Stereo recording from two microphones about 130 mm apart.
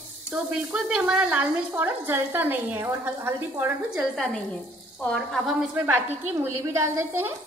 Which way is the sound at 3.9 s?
Centre (ahead or behind).